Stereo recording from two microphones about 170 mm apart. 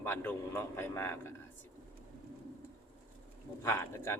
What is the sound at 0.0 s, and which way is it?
A man's voice, 10° left (ahead or behind).